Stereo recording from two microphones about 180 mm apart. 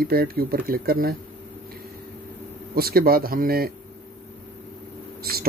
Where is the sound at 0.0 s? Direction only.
55° right (ahead or behind).